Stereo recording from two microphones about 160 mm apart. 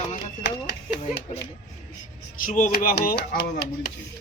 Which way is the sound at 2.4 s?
55° left (ahead or behind).